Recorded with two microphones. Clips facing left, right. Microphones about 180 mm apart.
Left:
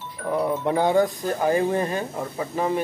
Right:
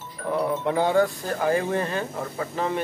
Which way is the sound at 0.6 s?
15° left (ahead or behind).